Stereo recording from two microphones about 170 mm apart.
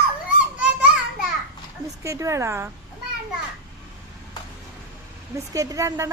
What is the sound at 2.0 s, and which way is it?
Speech, 15° right (ahead or behind).